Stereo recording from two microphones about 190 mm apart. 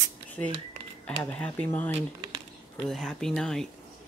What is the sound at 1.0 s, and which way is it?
Speech, 5° left (ahead or behind).